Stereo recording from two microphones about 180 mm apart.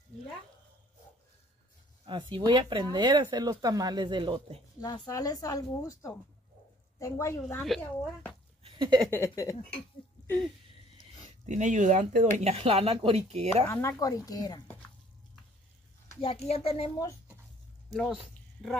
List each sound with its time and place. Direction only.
2.0 s speech: 25° right (ahead or behind)
4.7 s a woman's voice: 20° left (ahead or behind)
7.6 s speech: centre (ahead or behind)
8.6 s a sound: 30° right (ahead or behind)
9.1 s a woman's voice: 15° left (ahead or behind)
11.4 s speech: 45° right (ahead or behind)
12.4 s speech: 35° right (ahead or behind)
13.7 s speech: 15° left (ahead or behind)
16.2 s speech: 35° left (ahead or behind)
17.9 s speech: centre (ahead or behind)